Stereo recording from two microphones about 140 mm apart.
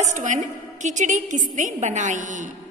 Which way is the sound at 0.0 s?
60° right (ahead or behind).